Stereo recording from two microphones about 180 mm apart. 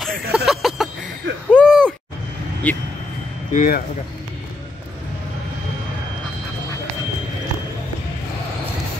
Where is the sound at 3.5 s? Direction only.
45° left (ahead or behind).